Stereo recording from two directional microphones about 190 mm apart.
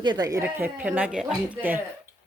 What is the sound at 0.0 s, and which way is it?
Speech, 20° right (ahead or behind).